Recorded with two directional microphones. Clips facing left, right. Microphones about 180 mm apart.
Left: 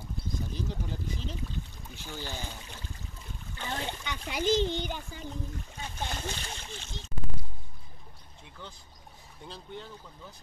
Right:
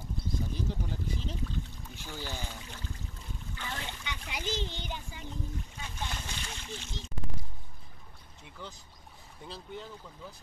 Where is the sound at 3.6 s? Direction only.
35° left (ahead or behind).